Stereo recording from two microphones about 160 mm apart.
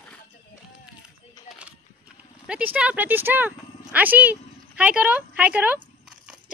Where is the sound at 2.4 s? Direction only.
10° right (ahead or behind).